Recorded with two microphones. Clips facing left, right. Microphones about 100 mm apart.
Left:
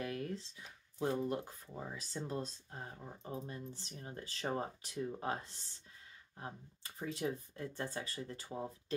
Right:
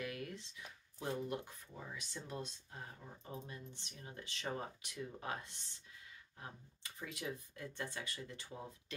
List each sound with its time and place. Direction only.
0.0 s speech: 30° left (ahead or behind)